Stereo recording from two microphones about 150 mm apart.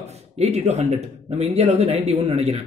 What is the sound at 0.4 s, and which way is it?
A man's voice, 45° right (ahead or behind).